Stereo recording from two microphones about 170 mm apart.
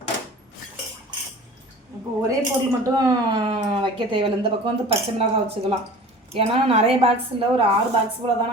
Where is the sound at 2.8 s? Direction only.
25° right (ahead or behind).